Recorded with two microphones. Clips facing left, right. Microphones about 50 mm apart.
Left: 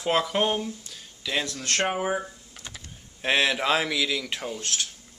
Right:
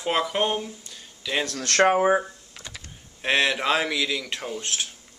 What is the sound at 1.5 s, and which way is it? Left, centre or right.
Speech, right.